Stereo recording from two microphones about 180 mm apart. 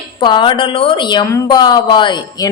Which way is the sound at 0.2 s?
25° left (ahead or behind).